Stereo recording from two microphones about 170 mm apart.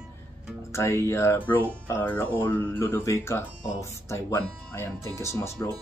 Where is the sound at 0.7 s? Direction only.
15° left (ahead or behind).